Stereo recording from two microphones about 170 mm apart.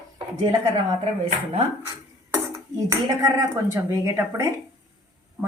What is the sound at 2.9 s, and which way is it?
Speech, 20° right (ahead or behind).